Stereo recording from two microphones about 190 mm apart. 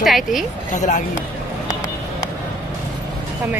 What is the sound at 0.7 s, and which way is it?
Speech, 40° left (ahead or behind).